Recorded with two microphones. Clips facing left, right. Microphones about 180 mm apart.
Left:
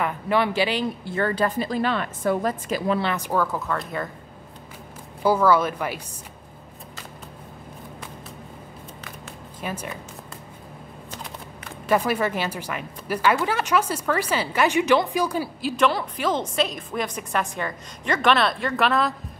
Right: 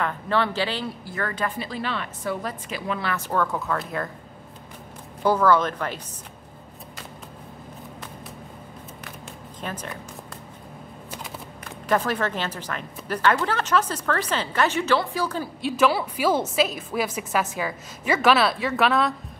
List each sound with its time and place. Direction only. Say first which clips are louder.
0.0 s speech: left 2 dB; 15° left (ahead or behind)
1.1 s a woman's voice: left 6 dB; 30° left (ahead or behind)
3.0 s speech: left 3 dB; 20° left (ahead or behind)
3.3 s a woman's voice: left 1 dB; 5° left (ahead or behind)
5.2 s speech: left 1 dB; 10° left (ahead or behind)
9.6 s speech: left 2 dB; 10° left (ahead or behind)
11.9 s speech: left 2 dB; 10° left (ahead or behind)
15.7 s a woman's voice: right 1 dB; 5° right (ahead or behind)